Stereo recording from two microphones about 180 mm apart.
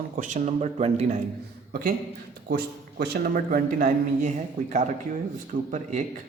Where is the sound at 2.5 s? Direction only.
60° right (ahead or behind).